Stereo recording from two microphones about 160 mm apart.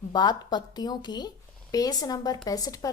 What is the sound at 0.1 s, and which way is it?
A woman's voice, 25° left (ahead or behind).